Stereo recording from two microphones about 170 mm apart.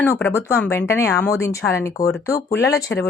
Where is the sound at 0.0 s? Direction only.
15° left (ahead or behind).